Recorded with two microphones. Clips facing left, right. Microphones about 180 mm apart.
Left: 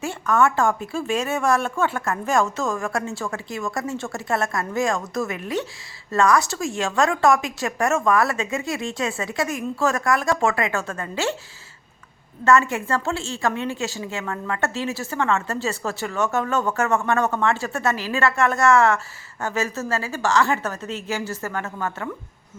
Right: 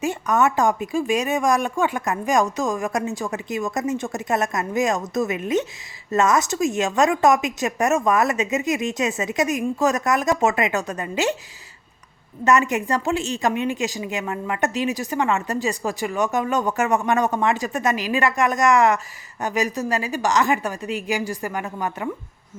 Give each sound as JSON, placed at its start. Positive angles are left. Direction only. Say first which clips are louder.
{"t": 0.0, "sound": "a woman's voice", "louder": "even", "side_deg": -20}
{"t": 12.5, "sound": "a woman's voice", "louder": "even", "side_deg": -20}